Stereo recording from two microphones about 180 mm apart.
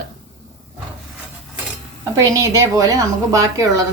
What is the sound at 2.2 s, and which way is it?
A woman's voice, 15° right (ahead or behind).